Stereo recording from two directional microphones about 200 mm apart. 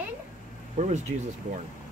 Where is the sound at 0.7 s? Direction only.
35° right (ahead or behind).